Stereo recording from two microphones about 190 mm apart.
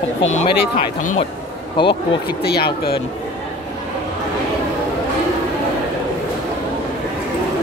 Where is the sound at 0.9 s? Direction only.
40° left (ahead or behind).